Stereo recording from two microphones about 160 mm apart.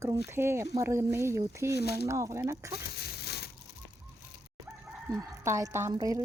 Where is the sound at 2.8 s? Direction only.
85° left.